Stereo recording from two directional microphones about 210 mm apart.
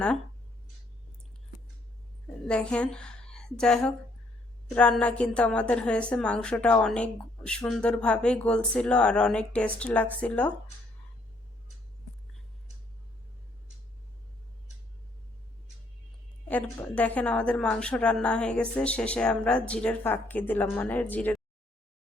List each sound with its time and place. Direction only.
2.5 s a woman's voice: 5° left (ahead or behind)
16.5 s a woman's voice: 5° left (ahead or behind)